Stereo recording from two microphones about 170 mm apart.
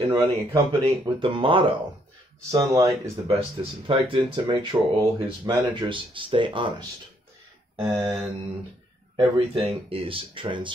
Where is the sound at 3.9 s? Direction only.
30° right (ahead or behind).